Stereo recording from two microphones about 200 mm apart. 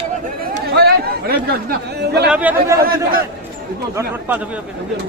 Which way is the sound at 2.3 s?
10° right (ahead or behind).